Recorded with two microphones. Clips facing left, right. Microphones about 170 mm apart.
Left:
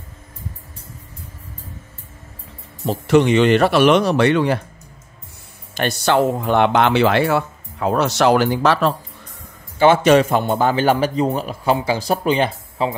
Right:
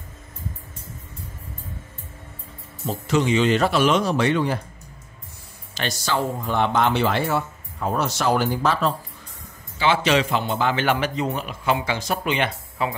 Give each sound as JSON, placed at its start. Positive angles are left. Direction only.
{"t": 2.9, "sound": "speech", "side_deg": 65}
{"t": 5.8, "sound": "speech", "side_deg": 60}
{"t": 9.8, "sound": "a man's voice", "side_deg": 50}